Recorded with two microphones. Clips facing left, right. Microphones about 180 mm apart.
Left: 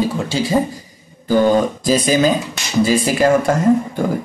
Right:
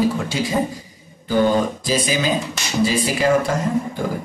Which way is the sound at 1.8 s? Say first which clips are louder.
Left 6 dB; 45° left (ahead or behind).